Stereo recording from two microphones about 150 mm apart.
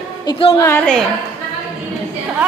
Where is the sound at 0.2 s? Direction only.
25° left (ahead or behind).